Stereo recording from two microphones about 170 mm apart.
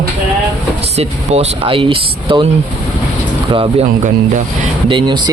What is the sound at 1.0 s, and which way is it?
Speech, 35° right (ahead or behind).